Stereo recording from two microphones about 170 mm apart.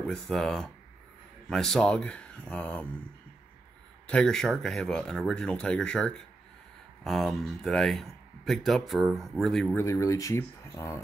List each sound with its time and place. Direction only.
0.0 s speech: 5° left (ahead or behind)
4.1 s speech: 5° left (ahead or behind)
9.8 s speech: 15° left (ahead or behind)